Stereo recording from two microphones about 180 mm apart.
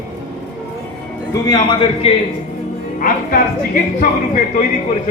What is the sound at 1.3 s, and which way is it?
Speech, 25° left (ahead or behind).